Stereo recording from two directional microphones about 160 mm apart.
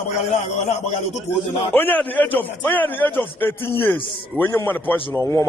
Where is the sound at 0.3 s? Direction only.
50° left (ahead or behind).